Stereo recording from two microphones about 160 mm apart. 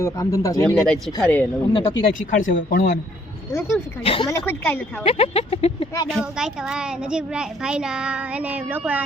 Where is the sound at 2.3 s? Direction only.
55° left (ahead or behind).